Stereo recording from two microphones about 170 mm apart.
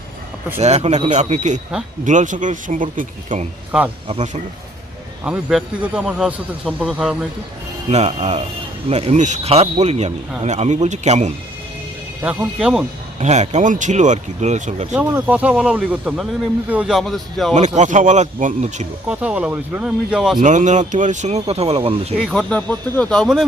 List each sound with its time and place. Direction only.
0.6 s a man's voice: 40° right (ahead or behind)
3.7 s a man's voice: 5° right (ahead or behind)
5.2 s a man's voice: 5° right (ahead or behind)
7.9 s a man's voice: 35° right (ahead or behind)
12.5 s a man's voice: 5° right (ahead or behind)
13.1 s speech: 45° right (ahead or behind)
15.1 s a man's voice: 10° right (ahead or behind)
17.5 s speech: 45° right (ahead or behind)
19.0 s a man's voice: 5° right (ahead or behind)
20.4 s speech: 45° right (ahead or behind)
22.2 s a man's voice: 5° left (ahead or behind)